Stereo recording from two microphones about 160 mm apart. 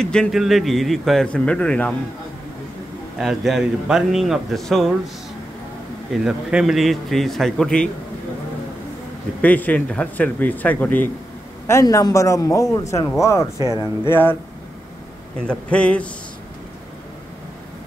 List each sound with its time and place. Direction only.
0.0 s speech: 5° left (ahead or behind)
3.2 s speech: centre (ahead or behind)
6.2 s speech: centre (ahead or behind)
9.4 s a man's voice: 10° left (ahead or behind)
13.6 s speech: 20° right (ahead or behind)
14.0 s speech: 15° left (ahead or behind)
15.4 s speech: 5° left (ahead or behind)